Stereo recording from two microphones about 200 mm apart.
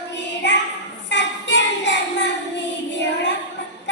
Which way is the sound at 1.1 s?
60° left (ahead or behind).